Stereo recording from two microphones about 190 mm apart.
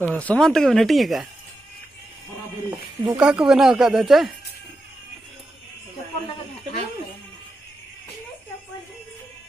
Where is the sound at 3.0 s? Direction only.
5° right (ahead or behind).